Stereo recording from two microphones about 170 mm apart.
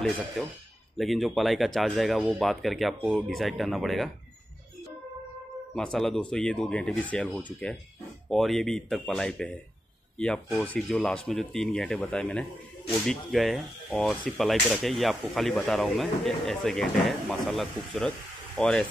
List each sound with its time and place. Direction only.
0.9 s speech: centre (ahead or behind)
5.8 s speech: 5° left (ahead or behind)